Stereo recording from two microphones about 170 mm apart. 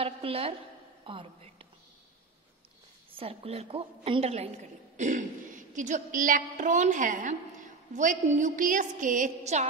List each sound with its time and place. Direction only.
0.0 s a woman's voice: 35° right (ahead or behind)
3.2 s a woman's voice: 35° right (ahead or behind)